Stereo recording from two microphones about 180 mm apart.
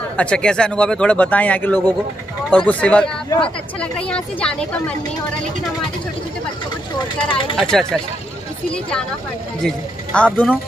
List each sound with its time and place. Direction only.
0.2 s speech: 5° left (ahead or behind)
7.2 s speech: 30° left (ahead or behind)
7.5 s speech: centre (ahead or behind)
9.7 s speech: 5° left (ahead or behind)